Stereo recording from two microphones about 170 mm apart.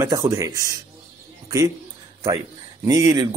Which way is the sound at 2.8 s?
20° right (ahead or behind).